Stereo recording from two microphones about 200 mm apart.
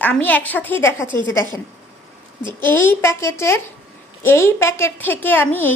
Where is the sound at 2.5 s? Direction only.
10° left (ahead or behind).